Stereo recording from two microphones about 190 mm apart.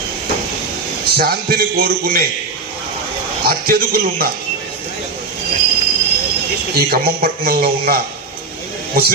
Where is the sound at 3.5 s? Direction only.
55° right (ahead or behind).